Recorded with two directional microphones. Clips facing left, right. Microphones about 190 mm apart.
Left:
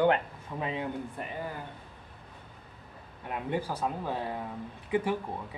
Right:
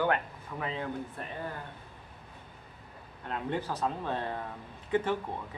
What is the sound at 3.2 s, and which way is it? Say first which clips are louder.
Speech: left 1 dB; 10° left (ahead or behind).